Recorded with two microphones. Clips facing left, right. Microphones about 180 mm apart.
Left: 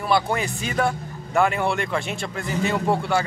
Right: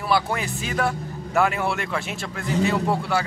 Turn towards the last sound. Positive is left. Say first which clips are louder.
# left 1 dB
turn(degrees=-5)  # may be behind; listen again after turning